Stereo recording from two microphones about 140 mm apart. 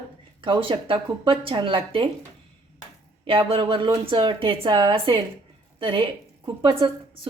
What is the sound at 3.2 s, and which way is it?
A woman's voice, 35° right (ahead or behind).